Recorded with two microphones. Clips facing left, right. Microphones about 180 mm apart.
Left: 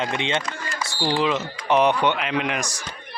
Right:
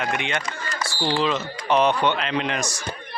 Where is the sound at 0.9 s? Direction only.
15° left (ahead or behind).